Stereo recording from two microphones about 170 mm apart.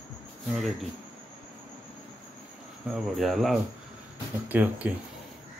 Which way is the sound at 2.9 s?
Centre (ahead or behind).